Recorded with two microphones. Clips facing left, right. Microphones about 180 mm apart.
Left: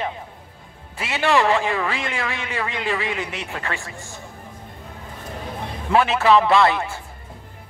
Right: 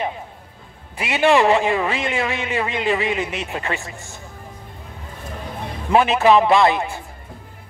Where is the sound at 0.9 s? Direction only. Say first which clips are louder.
Right 4 dB; 15° right (ahead or behind).